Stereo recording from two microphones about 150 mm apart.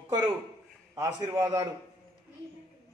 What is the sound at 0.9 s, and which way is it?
Speech, 20° right (ahead or behind).